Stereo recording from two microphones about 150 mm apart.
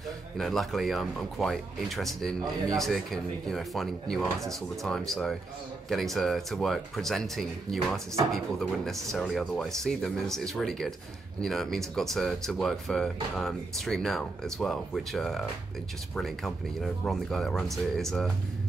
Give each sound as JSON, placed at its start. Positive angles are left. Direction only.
{"t": 0.4, "sound": "speech", "side_deg": 0}